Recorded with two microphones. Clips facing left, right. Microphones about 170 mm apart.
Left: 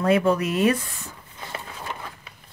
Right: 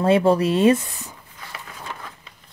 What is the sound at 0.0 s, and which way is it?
Speech, 30° right (ahead or behind).